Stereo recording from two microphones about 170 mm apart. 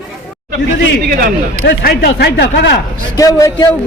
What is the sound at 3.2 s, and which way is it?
Speech, 20° left (ahead or behind).